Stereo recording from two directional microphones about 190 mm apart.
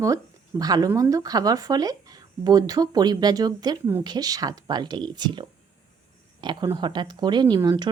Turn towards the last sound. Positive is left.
turn(degrees=-20)  # may be behind; listen again after turning